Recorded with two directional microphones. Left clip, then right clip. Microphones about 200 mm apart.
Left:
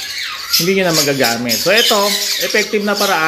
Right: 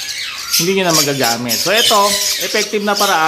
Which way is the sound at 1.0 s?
5° right (ahead or behind).